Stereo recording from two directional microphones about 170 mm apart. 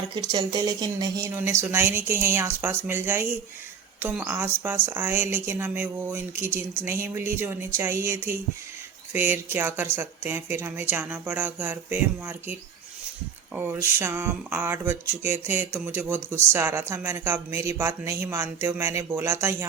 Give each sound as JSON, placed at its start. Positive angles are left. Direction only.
{"t": 0.2, "sound": "speech", "side_deg": -25}